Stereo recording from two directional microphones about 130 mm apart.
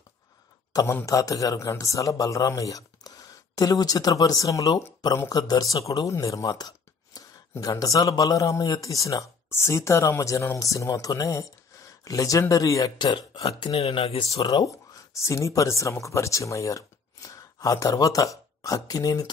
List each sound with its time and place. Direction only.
1.0 s a man's voice: 25° left (ahead or behind)
13.5 s speech: 45° left (ahead or behind)
15.2 s speech: 25° left (ahead or behind)